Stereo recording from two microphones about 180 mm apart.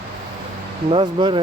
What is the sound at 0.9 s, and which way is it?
Speech, 25° right (ahead or behind).